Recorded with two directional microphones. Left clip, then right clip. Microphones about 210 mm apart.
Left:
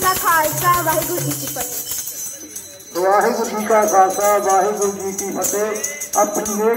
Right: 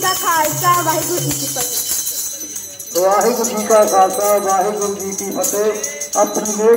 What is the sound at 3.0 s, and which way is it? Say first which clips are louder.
Speech: right 1 dB; 60° right (ahead or behind).